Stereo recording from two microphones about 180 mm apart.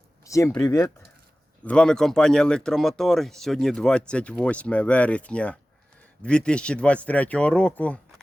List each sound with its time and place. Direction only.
0.3 s speech: 15° left (ahead or behind)
1.6 s speech: 5° left (ahead or behind)